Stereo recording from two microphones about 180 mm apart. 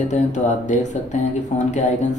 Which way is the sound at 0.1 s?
40° left (ahead or behind).